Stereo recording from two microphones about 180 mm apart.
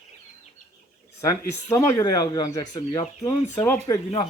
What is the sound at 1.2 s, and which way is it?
Speech, 15° left (ahead or behind).